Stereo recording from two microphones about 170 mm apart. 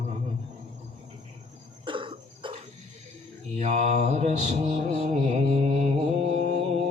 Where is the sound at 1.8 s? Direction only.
30° right (ahead or behind).